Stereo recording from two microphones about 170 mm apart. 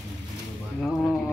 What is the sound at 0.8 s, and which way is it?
Speech, 5° left (ahead or behind).